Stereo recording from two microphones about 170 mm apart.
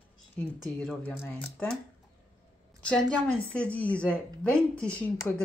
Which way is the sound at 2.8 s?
5° left (ahead or behind).